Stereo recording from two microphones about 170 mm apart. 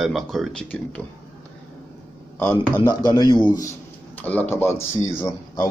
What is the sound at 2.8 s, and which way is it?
Speech, 25° left (ahead or behind).